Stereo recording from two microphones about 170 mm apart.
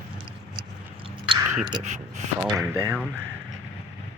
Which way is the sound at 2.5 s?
15° right (ahead or behind).